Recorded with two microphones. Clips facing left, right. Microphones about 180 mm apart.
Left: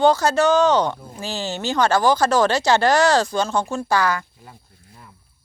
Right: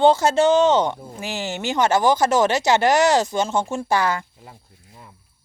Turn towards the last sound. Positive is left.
turn(degrees=-25)  # may be behind; listen again after turning